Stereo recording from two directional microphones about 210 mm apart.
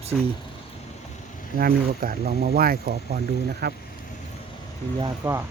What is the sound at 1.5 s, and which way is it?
Speech, 45° right (ahead or behind).